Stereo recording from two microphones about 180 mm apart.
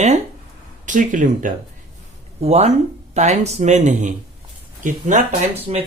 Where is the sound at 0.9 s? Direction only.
45° right (ahead or behind).